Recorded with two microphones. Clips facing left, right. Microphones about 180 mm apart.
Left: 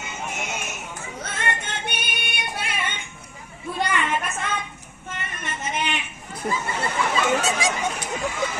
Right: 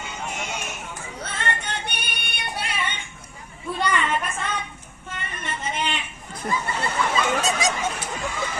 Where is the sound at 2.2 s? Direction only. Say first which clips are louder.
Right 2 dB; 50° left (ahead or behind).